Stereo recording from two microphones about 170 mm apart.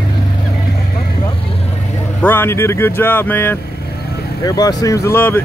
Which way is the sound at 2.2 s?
15° left (ahead or behind).